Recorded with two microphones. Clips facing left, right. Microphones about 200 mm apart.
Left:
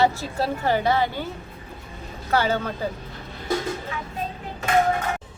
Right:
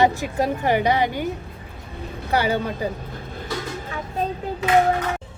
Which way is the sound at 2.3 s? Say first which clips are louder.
Right 1 dB; 15° right (ahead or behind).